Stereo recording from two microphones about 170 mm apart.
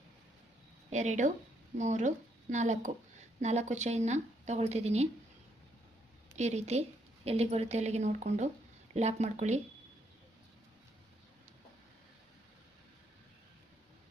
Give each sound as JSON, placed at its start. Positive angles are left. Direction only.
{"t": 0.9, "sound": "a woman's voice", "side_deg": -45}
{"t": 6.3, "sound": "speech", "side_deg": -40}